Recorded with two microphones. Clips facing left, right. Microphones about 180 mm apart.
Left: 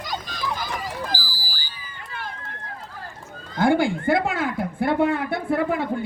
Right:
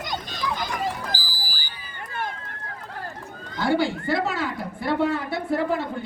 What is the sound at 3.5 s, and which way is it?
A woman's voice, 50° left (ahead or behind).